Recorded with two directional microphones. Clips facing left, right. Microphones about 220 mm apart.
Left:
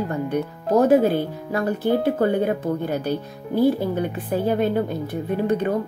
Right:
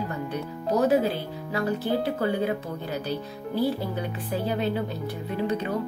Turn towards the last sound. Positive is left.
turn(degrees=55)  # may be behind; listen again after turning